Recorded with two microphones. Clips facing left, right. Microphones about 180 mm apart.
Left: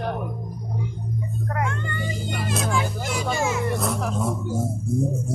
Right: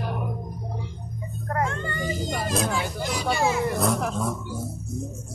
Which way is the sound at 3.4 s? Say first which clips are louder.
Right 2 dB; 35° right (ahead or behind).